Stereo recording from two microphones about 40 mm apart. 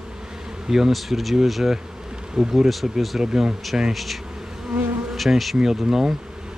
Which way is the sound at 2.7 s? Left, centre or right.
Centre.